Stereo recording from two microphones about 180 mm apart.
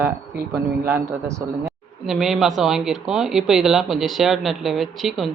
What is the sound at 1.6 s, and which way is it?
A woman's voice, centre (ahead or behind).